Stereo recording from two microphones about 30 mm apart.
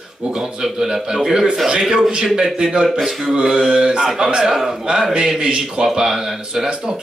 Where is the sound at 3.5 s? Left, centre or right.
Right.